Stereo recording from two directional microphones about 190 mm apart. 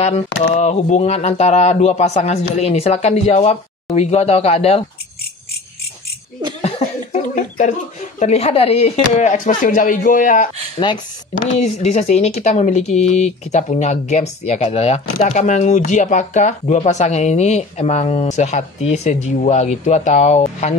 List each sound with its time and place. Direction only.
0.6 s speech: 35° left (ahead or behind)
6.6 s speech: 40° left (ahead or behind)
11.6 s speech: 35° left (ahead or behind)